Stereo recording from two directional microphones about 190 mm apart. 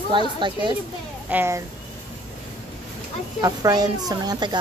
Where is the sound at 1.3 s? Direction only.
10° right (ahead or behind).